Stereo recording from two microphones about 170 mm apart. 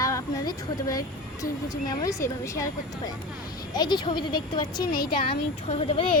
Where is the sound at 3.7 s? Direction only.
25° left (ahead or behind).